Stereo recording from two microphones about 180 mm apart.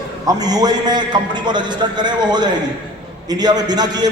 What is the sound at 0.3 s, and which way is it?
A man's voice, 20° right (ahead or behind).